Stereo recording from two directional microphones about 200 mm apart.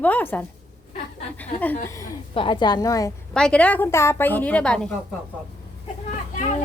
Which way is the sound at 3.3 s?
5° left (ahead or behind).